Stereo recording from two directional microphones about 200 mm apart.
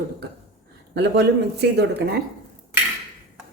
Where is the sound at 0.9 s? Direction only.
55° right (ahead or behind).